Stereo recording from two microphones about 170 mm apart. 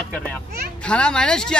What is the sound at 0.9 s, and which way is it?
Speech, 5° left (ahead or behind).